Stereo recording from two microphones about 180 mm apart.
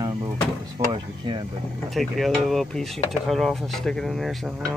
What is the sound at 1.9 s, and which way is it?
Speech, centre (ahead or behind).